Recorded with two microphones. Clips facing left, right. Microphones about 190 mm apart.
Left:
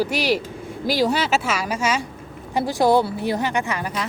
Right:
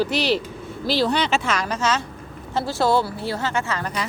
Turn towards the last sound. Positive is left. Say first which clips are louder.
# left 2 dB
turn(degrees=15)  # may be behind; listen again after turning